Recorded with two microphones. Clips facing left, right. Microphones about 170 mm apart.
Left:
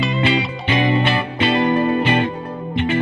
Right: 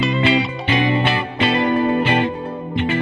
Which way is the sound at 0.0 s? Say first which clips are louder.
Right 2 dB; centre (ahead or behind).